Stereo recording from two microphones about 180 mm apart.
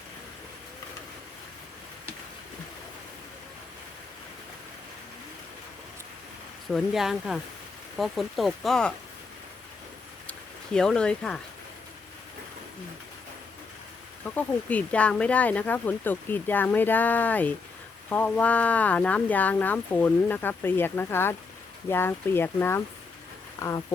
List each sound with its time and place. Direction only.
6.7 s speech: centre (ahead or behind)
10.8 s speech: 5° left (ahead or behind)
14.3 s speech: 10° left (ahead or behind)